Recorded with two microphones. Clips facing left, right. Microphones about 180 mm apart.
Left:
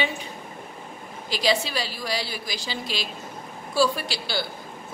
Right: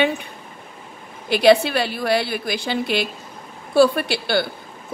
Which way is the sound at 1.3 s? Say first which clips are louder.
Right 10 dB; 60° right (ahead or behind).